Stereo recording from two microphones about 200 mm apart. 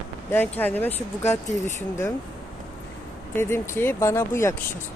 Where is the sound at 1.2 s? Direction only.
35° left (ahead or behind).